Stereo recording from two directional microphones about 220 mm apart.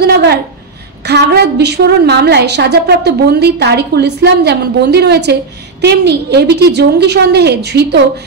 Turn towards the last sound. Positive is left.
turn(degrees=-50)  # may be behind; listen again after turning